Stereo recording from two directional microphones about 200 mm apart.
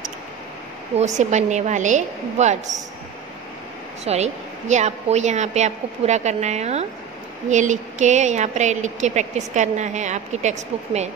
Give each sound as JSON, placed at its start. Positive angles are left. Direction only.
{"t": 0.9, "sound": "a woman's voice", "side_deg": -35}
{"t": 4.0, "sound": "a woman's voice", "side_deg": -35}